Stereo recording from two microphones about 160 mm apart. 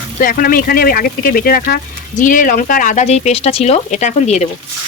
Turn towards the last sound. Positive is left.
turn(degrees=45)  # may be behind; listen again after turning